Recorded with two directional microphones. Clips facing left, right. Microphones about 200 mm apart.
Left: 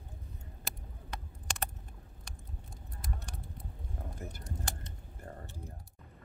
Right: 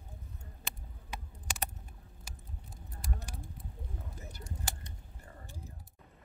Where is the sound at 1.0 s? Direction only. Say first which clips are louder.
Left 1 dB; 10° right (ahead or behind).